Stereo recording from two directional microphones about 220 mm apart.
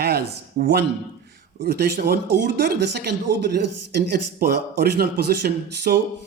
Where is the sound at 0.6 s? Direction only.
40° right (ahead or behind).